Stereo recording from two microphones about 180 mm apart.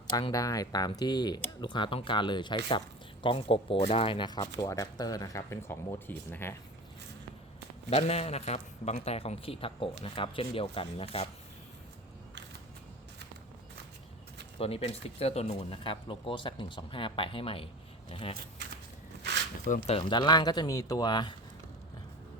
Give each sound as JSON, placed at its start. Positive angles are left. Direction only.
{"t": 0.1, "sound": "speech", "side_deg": 20}
{"t": 7.9, "sound": "a man's voice", "side_deg": 35}
{"t": 14.6, "sound": "a man's voice", "side_deg": 30}
{"t": 19.6, "sound": "speech", "side_deg": 40}